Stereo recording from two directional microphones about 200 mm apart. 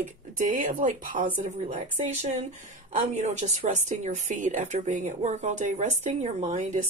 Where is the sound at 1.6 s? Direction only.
30° right (ahead or behind).